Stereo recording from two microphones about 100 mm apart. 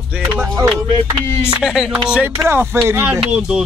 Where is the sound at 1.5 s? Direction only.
5° right (ahead or behind).